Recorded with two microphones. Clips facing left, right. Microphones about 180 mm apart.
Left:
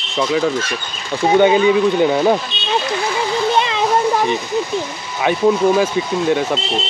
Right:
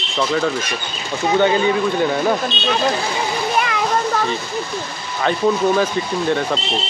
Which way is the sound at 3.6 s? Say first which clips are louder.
Left 1 dB; 25° left (ahead or behind).